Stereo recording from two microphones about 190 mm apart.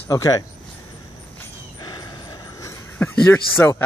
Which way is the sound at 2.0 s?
20° left (ahead or behind).